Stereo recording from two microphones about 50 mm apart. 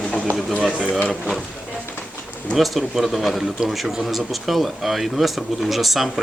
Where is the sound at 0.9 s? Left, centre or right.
Left.